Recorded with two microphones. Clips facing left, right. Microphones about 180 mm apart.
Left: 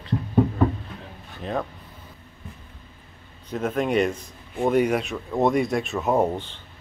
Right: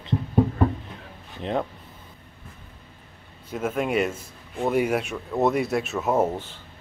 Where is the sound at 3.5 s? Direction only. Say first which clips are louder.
Left 2 dB; 5° right (ahead or behind).